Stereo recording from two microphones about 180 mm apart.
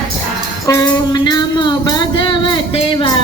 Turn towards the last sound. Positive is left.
turn(degrees=30)  # may be behind; listen again after turning